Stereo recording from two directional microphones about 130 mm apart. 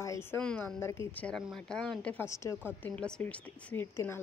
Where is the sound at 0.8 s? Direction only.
20° left (ahead or behind).